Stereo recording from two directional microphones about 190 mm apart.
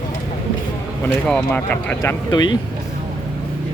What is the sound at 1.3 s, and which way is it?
Speech, 5° left (ahead or behind).